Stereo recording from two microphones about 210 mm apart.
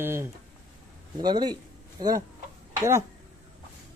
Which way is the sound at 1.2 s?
20° right (ahead or behind).